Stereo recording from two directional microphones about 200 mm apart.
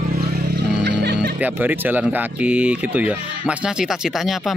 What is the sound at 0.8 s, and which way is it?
Music, 60° right (ahead or behind).